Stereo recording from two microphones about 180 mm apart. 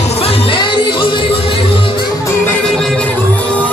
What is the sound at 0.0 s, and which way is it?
Music, 35° left (ahead or behind).